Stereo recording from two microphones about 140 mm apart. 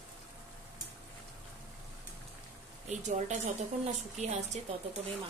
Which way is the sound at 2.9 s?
55° right (ahead or behind).